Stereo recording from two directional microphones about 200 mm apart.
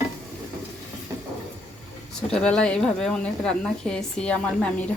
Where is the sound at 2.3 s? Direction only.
5° left (ahead or behind).